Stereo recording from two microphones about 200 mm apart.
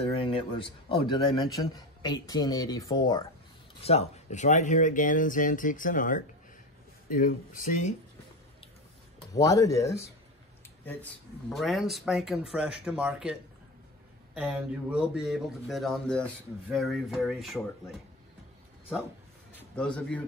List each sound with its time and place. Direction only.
0.1 s a man's voice: 25° left (ahead or behind)
3.8 s speech: 30° left (ahead or behind)
9.3 s speech: 15° left (ahead or behind); by 17.6 s centre (ahead or behind)
19.5 s a man's voice: 5° left (ahead or behind)